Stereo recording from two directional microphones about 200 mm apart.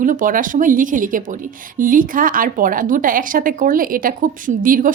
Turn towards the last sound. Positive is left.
turn(degrees=-45)  # may be behind; listen again after turning